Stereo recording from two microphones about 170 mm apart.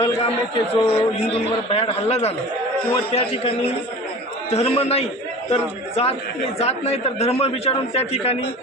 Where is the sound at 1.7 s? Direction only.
35° left (ahead or behind).